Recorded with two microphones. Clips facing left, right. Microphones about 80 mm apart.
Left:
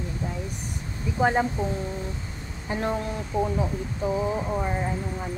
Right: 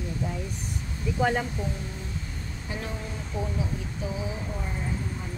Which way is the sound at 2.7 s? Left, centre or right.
Left.